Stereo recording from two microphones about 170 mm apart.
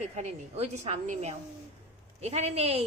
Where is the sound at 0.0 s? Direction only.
40° right (ahead or behind).